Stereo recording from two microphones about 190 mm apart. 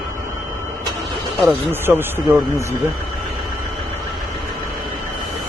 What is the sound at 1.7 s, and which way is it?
A man's voice, 10° right (ahead or behind).